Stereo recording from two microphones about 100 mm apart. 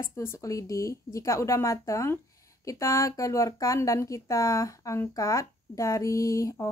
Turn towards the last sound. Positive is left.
turn(degrees=30)  # may be behind; listen again after turning